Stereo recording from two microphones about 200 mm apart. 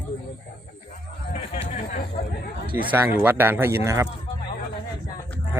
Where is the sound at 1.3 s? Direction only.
35° left (ahead or behind).